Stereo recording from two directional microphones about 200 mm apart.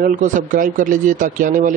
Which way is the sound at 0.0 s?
40° right (ahead or behind).